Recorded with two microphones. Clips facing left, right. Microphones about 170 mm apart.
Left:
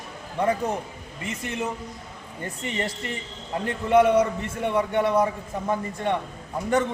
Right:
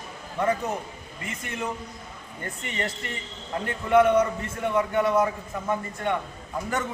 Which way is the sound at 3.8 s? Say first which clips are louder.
Left 1 dB; 30° left (ahead or behind).